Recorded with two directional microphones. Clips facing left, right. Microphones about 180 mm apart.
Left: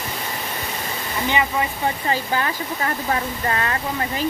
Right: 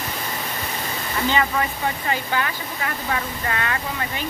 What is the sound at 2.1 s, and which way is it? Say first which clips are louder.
Speech: left 2 dB; 35° left (ahead or behind).